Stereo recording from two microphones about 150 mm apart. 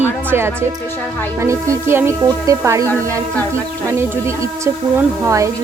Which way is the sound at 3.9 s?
15° right (ahead or behind).